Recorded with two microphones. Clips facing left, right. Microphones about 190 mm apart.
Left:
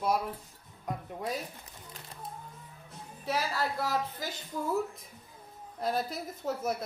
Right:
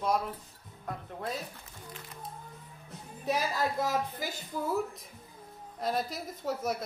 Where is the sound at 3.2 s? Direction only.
15° right (ahead or behind).